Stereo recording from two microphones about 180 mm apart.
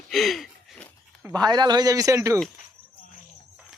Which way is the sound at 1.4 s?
25° right (ahead or behind).